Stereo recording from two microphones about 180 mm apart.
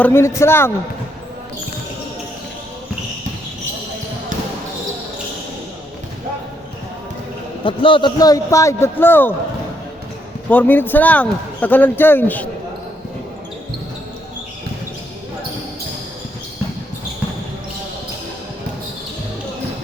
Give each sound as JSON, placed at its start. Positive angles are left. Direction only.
{"t": 0.0, "sound": "a man's voice", "side_deg": 15}
{"t": 7.6, "sound": "a man's voice", "side_deg": 30}
{"t": 10.5, "sound": "a man's voice", "side_deg": 10}